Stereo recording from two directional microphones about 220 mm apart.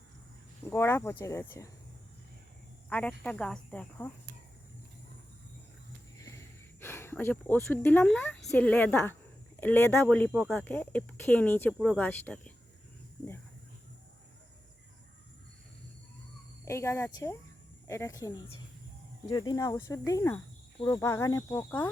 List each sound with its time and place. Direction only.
0.7 s speech: 10° left (ahead or behind)
2.9 s speech: 5° left (ahead or behind)
6.7 s speech: 10° left (ahead or behind)
16.6 s speech: 10° left (ahead or behind)